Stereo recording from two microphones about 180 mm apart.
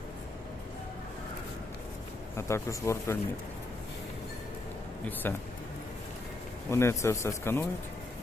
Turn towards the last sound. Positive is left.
turn(degrees=15)  # may be behind; listen again after turning